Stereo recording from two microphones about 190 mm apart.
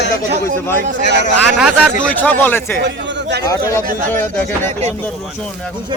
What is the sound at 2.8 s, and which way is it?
Speech, 65° right (ahead or behind).